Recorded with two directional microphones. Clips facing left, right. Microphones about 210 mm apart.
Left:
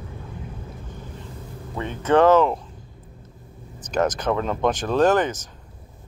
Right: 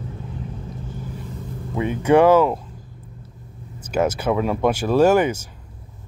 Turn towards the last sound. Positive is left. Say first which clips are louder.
# right 3 dB
turn(degrees=-10)  # may be behind; listen again after turning